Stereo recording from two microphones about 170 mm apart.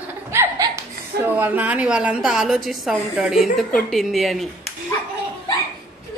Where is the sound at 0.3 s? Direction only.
15° right (ahead or behind); by 4.5 s centre (ahead or behind).